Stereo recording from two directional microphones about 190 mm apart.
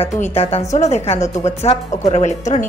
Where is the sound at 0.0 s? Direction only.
30° left (ahead or behind).